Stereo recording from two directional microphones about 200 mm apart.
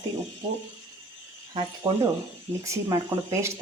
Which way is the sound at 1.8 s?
30° right (ahead or behind).